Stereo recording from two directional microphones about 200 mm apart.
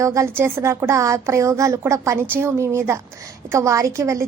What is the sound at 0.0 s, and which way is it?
A woman's voice, 15° right (ahead or behind).